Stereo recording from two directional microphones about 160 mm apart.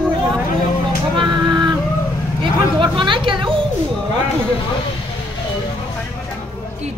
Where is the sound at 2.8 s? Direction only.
30° right (ahead or behind).